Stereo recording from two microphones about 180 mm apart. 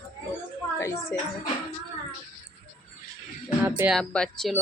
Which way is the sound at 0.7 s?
15° left (ahead or behind).